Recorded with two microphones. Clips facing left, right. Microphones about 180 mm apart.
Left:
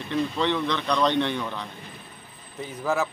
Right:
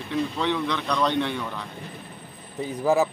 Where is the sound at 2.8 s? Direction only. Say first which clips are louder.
Right 5 dB; 15° right (ahead or behind).